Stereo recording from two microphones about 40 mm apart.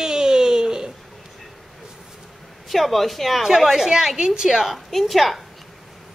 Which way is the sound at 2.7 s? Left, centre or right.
Centre.